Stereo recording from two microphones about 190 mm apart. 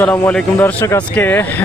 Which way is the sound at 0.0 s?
5° left (ahead or behind).